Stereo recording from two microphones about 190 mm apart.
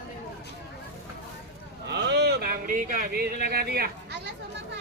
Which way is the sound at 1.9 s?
60° right (ahead or behind).